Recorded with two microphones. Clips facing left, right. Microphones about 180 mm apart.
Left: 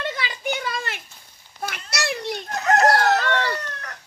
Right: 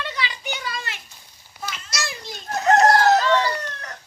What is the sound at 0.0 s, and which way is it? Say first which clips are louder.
Children playing: left 1 dB; 50° left (ahead or behind).